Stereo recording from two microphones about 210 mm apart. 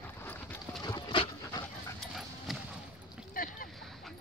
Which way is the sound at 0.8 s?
20° left (ahead or behind).